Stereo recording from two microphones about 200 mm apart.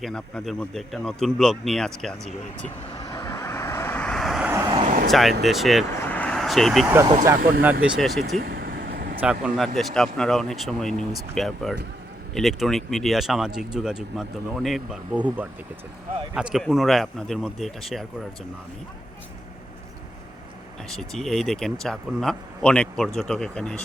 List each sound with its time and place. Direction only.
0.0 s speech: 5° left (ahead or behind)
3.0 s vehicle: 20° left (ahead or behind); by 4.7 s 10° right (ahead or behind)
4.7 s vehicle: 25° right (ahead or behind)
5.0 s speech: centre (ahead or behind)
8.4 s vehicle: 50° right (ahead or behind)
9.2 s speech: 5° right (ahead or behind)
20.9 s speech: centre (ahead or behind)